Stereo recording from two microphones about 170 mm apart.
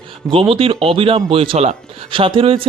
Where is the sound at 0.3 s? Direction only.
30° right (ahead or behind).